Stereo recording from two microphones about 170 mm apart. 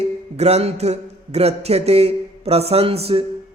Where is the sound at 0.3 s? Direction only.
40° right (ahead or behind).